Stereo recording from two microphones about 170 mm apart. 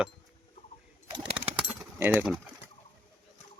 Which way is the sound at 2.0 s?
10° right (ahead or behind).